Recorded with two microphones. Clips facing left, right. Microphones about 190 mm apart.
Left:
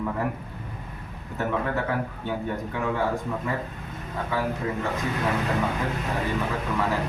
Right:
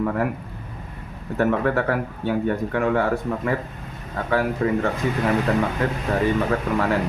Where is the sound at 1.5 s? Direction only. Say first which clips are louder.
Right 4 dB; 70° right (ahead or behind).